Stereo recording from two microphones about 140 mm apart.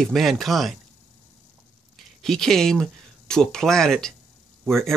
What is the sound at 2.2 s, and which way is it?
Speech, 5° left (ahead or behind).